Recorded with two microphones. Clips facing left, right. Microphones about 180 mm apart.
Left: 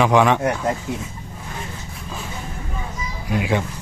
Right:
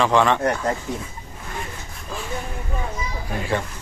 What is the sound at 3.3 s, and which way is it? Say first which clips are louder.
Speech: left 4 dB; 10° left (ahead or behind).